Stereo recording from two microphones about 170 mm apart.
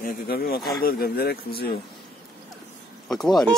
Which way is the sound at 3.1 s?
5° left (ahead or behind).